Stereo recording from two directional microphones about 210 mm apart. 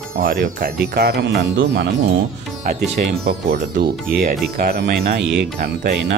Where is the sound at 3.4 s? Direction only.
55° right (ahead or behind).